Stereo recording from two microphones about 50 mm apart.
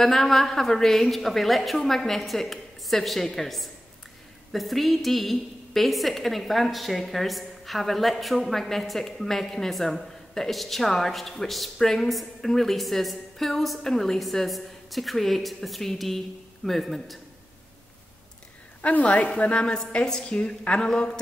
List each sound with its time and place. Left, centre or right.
0.0 s a woman's voice: centre
18.8 s a woman's voice: left
20.9 s speech: centre